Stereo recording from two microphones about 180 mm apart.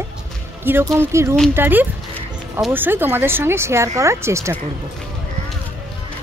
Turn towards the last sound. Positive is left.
turn(degrees=-15)  # may be behind; listen again after turning